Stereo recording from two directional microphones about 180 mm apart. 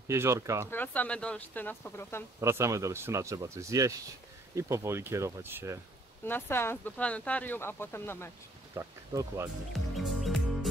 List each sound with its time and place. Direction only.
0.1 s speech: 15° right (ahead or behind)
0.7 s speech: 10° left (ahead or behind)
2.4 s speech: 15° right (ahead or behind)
6.2 s speech: 10° left (ahead or behind)
8.7 s speech: 15° right (ahead or behind)
9.7 s music: centre (ahead or behind)